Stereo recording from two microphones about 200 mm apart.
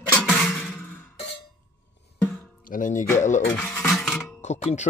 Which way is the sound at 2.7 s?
40° left (ahead or behind).